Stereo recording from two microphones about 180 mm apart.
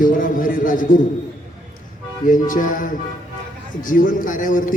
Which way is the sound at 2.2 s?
50° left (ahead or behind).